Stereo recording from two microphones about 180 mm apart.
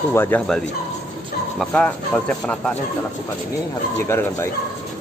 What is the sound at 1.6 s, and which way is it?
Speech, 5° left (ahead or behind).